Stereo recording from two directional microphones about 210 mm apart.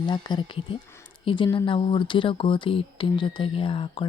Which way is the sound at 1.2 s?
25° left (ahead or behind).